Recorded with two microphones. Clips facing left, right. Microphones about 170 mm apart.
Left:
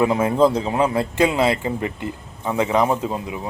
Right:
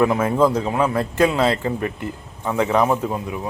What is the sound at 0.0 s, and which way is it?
A man's voice, 20° left (ahead or behind).